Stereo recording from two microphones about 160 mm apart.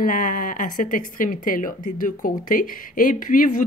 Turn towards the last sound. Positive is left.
turn(degrees=55)  # may be behind; listen again after turning